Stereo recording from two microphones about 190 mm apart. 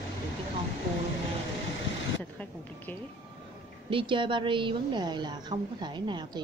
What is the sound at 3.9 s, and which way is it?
Speech, 25° right (ahead or behind).